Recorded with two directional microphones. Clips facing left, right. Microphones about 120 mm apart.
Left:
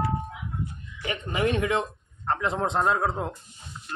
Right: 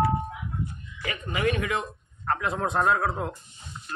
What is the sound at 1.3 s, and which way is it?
Speech, 25° left (ahead or behind).